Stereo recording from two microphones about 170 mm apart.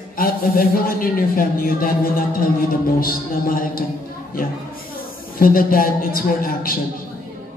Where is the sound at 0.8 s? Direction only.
60° left (ahead or behind).